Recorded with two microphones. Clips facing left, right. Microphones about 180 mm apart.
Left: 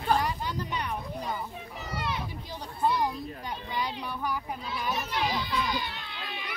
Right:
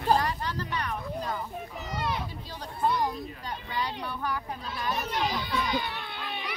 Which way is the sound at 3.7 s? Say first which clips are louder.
Right 1 dB; 10° left (ahead or behind).